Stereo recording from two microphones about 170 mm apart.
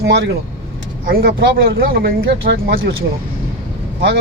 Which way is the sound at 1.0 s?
60° right (ahead or behind).